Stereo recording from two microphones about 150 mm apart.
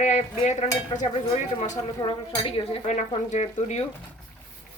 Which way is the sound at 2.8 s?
55° left (ahead or behind).